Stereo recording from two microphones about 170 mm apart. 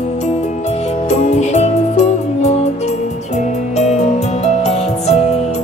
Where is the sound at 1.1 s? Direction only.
40° left (ahead or behind).